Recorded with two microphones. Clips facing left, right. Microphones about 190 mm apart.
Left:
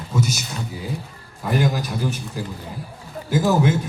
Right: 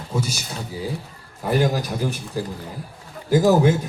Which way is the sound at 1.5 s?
35° right (ahead or behind).